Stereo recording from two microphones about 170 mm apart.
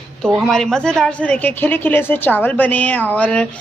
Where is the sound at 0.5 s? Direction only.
5° left (ahead or behind).